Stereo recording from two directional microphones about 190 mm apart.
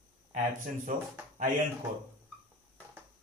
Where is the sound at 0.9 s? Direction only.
40° right (ahead or behind).